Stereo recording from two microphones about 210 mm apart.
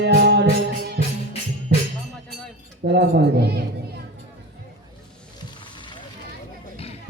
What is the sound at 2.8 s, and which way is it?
Speech, 50° right (ahead or behind).